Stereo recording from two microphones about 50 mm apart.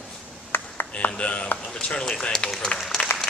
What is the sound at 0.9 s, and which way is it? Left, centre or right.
A man's voice, left.